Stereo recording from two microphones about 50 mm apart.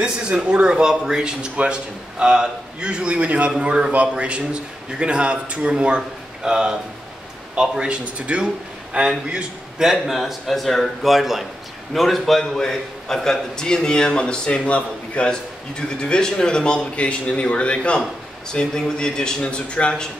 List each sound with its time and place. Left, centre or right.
0.0 s a man's voice: right
9.3 s a man's voice: centre; by 20.1 s left